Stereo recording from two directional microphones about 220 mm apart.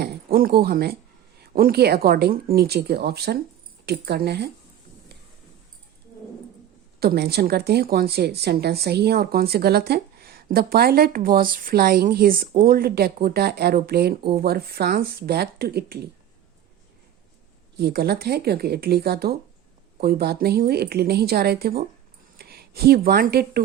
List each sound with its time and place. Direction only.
0.0 s a woman's voice: 40° right (ahead or behind)
7.0 s a woman's voice: 45° right (ahead or behind)
17.7 s a woman's voice: 45° right (ahead or behind)